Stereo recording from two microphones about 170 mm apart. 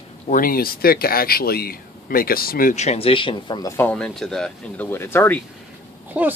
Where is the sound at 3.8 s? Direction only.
5° left (ahead or behind).